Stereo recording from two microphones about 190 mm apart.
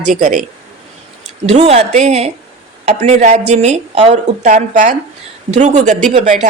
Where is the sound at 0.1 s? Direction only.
40° right (ahead or behind).